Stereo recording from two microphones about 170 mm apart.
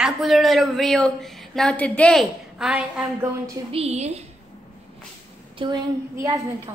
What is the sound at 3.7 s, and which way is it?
Speech, 40° right (ahead or behind).